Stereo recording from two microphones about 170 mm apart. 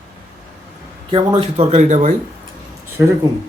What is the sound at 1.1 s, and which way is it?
Speech, 35° right (ahead or behind).